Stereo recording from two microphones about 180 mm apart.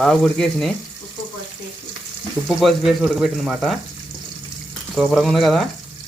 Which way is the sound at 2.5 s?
Centre (ahead or behind).